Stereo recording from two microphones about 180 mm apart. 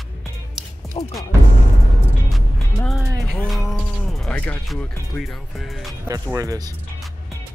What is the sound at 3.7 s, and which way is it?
Speech, 5° left (ahead or behind).